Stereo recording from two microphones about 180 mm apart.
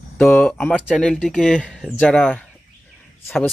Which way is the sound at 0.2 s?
5° left (ahead or behind).